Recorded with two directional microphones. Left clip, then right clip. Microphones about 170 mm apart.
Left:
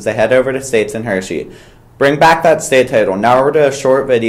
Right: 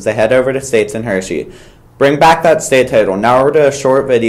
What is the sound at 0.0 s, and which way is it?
Speech, 20° right (ahead or behind).